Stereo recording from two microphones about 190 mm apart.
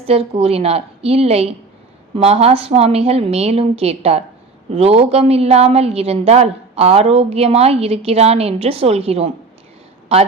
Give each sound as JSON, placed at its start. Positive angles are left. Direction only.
{"t": 0.0, "sound": "a woman's voice", "side_deg": -30}